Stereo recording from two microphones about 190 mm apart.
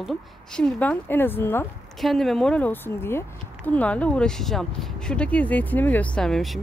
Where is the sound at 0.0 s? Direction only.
Centre (ahead or behind).